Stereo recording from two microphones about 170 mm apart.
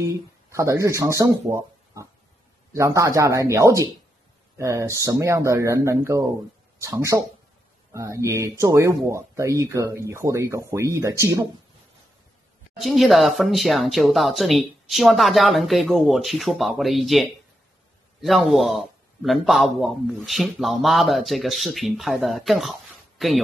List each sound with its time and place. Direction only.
0.0 s speech: 15° right (ahead or behind)
12.7 s speech: centre (ahead or behind)